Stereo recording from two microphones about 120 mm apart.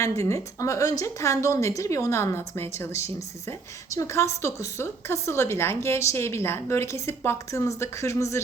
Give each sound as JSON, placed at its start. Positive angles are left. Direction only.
{"t": 0.0, "sound": "a woman's voice", "side_deg": 25}